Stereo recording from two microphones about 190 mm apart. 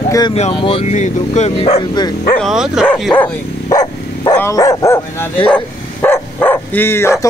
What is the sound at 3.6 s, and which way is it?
Dog, 20° left (ahead or behind).